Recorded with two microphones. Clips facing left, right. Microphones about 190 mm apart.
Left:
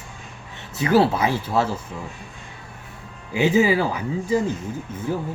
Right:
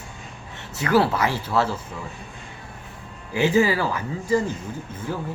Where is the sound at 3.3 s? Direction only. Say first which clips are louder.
Left 1 dB; 15° left (ahead or behind).